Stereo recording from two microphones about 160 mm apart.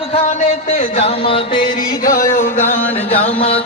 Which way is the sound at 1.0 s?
35° left (ahead or behind).